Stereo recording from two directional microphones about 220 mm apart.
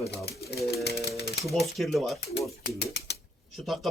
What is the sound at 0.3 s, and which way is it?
Pigeon, 45° left (ahead or behind).